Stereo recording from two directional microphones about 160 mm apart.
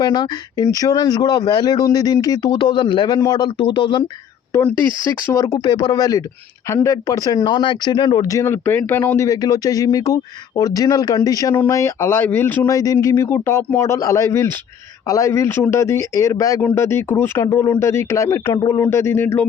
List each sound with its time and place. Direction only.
0.0 s speech: 25° left (ahead or behind)
4.5 s speech: 15° left (ahead or behind)